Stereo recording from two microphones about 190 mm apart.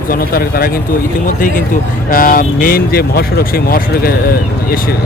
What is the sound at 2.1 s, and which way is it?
Speech, 50° left (ahead or behind).